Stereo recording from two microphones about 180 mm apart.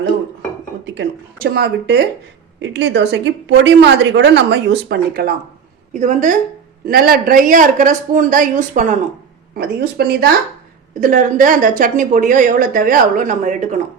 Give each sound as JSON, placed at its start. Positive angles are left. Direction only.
{"t": 0.9, "sound": "speech", "side_deg": -65}
{"t": 2.6, "sound": "a woman's voice", "side_deg": -80}
{"t": 5.9, "sound": "a woman's voice", "side_deg": -45}
{"t": 6.8, "sound": "a woman's voice", "side_deg": -55}
{"t": 9.6, "sound": "speech", "side_deg": -55}
{"t": 11.0, "sound": "a woman's voice", "side_deg": -45}